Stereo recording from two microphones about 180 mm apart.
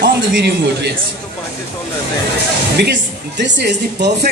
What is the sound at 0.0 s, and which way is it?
Speech, 75° right (ahead or behind).